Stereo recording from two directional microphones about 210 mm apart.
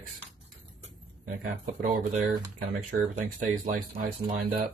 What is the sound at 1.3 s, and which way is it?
Speech, 40° right (ahead or behind).